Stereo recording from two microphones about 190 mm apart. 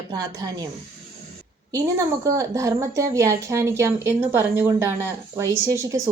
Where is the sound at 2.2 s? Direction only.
15° right (ahead or behind).